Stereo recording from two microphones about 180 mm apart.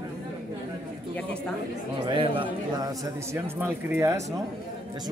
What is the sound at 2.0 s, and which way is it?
A man's voice, 30° right (ahead or behind).